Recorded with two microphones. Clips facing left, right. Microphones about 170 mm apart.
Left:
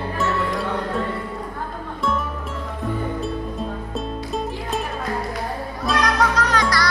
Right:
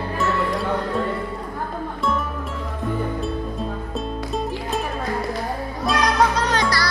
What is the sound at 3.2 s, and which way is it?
Music, centre (ahead or behind).